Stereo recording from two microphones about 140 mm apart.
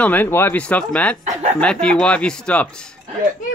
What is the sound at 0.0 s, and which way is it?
Speech, 15° left (ahead or behind).